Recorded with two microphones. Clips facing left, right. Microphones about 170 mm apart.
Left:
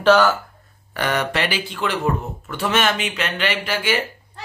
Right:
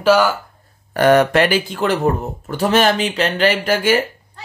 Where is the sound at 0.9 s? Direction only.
45° right (ahead or behind).